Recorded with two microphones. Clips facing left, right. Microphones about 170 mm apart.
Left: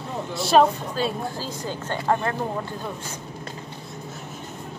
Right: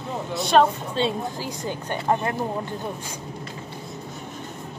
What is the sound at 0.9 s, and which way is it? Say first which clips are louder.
Speech: right 1 dB; 20° right (ahead or behind).